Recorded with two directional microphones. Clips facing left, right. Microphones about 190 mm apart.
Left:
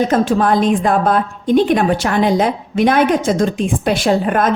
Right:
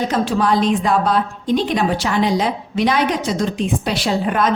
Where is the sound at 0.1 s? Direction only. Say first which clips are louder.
Left 4 dB; 50° left (ahead or behind).